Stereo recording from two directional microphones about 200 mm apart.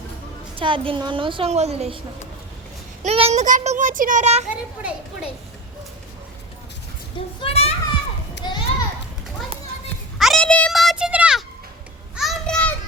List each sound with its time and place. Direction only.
0.5 s a woman's voice: 25° right (ahead or behind)
3.0 s a child's voice: 30° right (ahead or behind)
4.8 s speech: 5° right (ahead or behind)
7.3 s a child's voice: 30° left (ahead or behind)
8.4 s children playing: 20° left (ahead or behind)
10.2 s a sound: centre (ahead or behind)
12.1 s children playing: centre (ahead or behind)